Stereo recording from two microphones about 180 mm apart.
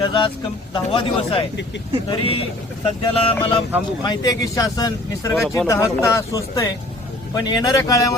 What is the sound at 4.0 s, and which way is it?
Speech, 20° left (ahead or behind).